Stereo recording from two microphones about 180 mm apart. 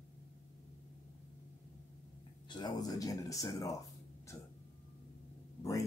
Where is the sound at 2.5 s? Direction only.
25° left (ahead or behind).